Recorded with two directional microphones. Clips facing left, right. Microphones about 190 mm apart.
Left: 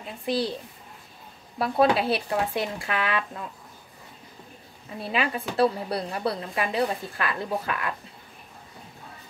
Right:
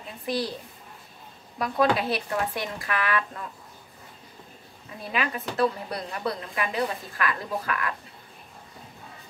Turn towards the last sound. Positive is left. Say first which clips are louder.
# left 1 dB
turn(degrees=25)  # may be behind; listen again after turning